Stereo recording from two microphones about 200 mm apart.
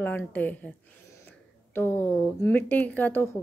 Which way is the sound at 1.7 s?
10° left (ahead or behind).